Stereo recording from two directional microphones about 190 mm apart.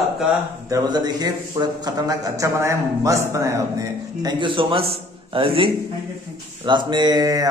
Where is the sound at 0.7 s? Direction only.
20° right (ahead or behind).